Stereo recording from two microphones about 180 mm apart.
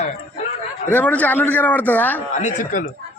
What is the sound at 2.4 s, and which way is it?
Speech, 45° left (ahead or behind).